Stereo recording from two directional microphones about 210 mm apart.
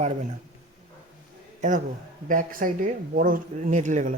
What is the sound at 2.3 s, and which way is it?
Speech, 40° right (ahead or behind).